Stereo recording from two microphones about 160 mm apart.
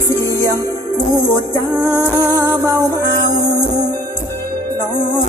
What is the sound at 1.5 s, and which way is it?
Music, 15° left (ahead or behind).